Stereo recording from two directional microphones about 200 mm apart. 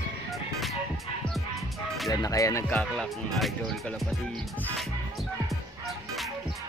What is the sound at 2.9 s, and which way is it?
Music, centre (ahead or behind).